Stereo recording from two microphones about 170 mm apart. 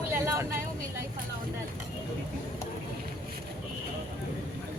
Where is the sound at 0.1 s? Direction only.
15° right (ahead or behind).